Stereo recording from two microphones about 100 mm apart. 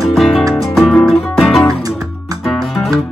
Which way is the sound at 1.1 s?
Centre (ahead or behind).